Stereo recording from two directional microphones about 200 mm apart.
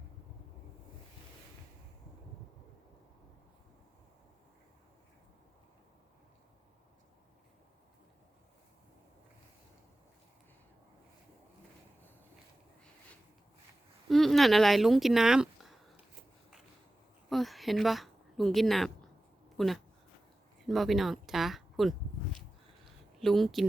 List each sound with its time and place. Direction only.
14.1 s speech: centre (ahead or behind)
17.2 s speech: centre (ahead or behind)
23.2 s speech: centre (ahead or behind)